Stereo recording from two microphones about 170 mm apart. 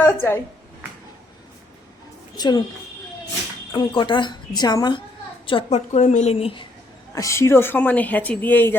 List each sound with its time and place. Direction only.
0.0 s a woman's voice: 15° left (ahead or behind)
2.3 s a woman's voice: 25° left (ahead or behind)
3.7 s a woman's voice: 25° left (ahead or behind)
7.1 s speech: 20° left (ahead or behind)